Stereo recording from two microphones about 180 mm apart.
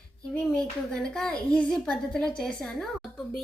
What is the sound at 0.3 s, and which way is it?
Speech, 5° left (ahead or behind).